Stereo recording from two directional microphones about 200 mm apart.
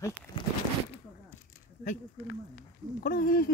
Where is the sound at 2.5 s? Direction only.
45° left (ahead or behind).